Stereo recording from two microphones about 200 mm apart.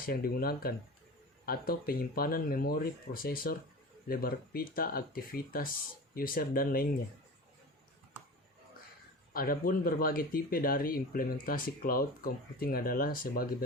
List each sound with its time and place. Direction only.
0.0 s speech: 45° left (ahead or behind)
9.3 s speech: 45° left (ahead or behind)